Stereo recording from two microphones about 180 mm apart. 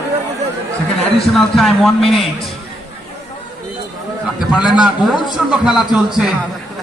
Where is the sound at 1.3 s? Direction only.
Centre (ahead or behind).